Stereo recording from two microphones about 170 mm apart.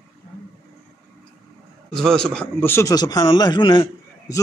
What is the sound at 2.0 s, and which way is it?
A man's voice, 5° left (ahead or behind).